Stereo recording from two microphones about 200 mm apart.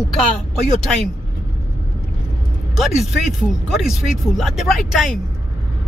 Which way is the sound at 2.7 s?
Centre (ahead or behind).